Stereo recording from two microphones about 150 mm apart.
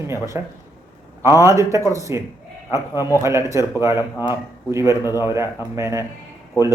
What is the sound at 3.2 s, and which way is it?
A man's voice, 20° right (ahead or behind).